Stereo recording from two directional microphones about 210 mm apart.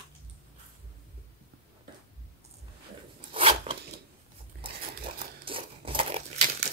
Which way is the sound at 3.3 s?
25° right (ahead or behind).